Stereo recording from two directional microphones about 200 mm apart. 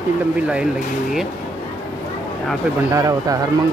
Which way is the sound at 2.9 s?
15° right (ahead or behind).